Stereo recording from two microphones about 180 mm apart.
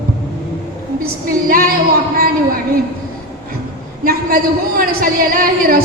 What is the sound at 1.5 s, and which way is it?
Music, 55° right (ahead or behind).